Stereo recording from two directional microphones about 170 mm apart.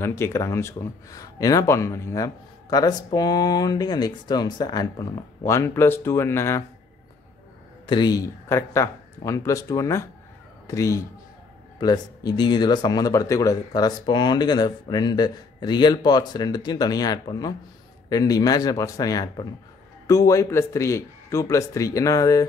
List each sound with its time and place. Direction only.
0.0 s speech: 15° left (ahead or behind)
7.8 s speech: 25° left (ahead or behind)